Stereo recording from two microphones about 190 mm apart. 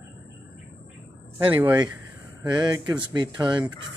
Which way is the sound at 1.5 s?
10° right (ahead or behind).